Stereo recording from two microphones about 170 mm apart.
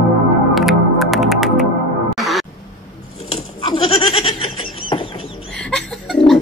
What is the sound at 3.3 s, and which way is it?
Goat, 30° left (ahead or behind).